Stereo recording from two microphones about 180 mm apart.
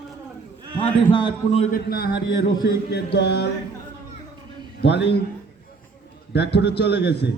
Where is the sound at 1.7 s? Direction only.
60° left (ahead or behind).